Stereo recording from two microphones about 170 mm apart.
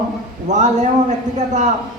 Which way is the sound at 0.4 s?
45° right (ahead or behind).